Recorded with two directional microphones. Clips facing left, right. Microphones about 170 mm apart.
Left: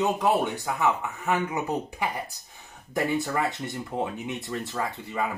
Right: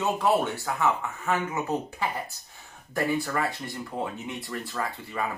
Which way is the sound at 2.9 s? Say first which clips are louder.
Left 1 dB; 20° left (ahead or behind).